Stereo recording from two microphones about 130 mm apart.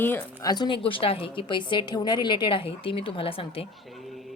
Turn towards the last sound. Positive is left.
turn(degrees=45)  # may be behind; listen again after turning